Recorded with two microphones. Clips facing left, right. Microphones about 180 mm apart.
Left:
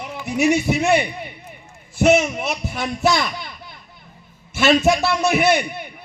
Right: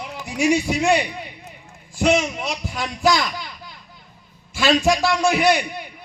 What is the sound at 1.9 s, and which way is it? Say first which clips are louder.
Speech: left 3 dB; 25° left (ahead or behind).